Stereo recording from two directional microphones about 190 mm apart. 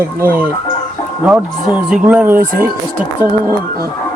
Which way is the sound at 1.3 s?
5° right (ahead or behind).